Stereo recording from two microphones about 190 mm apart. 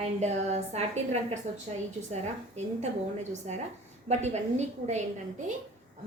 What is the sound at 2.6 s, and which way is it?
Speech, 35° right (ahead or behind).